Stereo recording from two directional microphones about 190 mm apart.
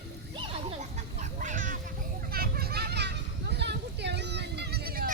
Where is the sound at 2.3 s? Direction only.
50° right (ahead or behind).